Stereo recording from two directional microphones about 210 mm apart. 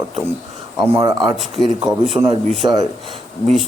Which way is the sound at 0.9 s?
20° right (ahead or behind).